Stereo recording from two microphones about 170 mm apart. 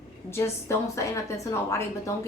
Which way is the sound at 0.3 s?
15° left (ahead or behind).